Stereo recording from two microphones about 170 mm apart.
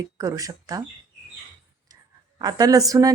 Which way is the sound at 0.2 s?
20° right (ahead or behind).